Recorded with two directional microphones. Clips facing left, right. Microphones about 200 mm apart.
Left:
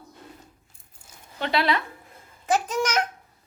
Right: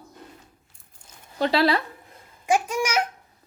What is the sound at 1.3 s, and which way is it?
Speech, 35° right (ahead or behind).